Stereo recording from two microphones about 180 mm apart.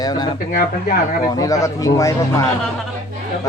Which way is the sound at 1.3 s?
20° left (ahead or behind).